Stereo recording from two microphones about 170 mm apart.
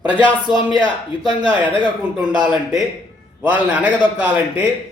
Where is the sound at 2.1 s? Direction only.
5° right (ahead or behind).